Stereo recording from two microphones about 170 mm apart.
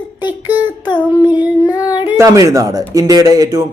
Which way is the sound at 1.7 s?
25° left (ahead or behind).